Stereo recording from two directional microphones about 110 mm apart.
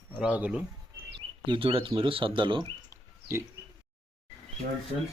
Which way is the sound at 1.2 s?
50° right (ahead or behind).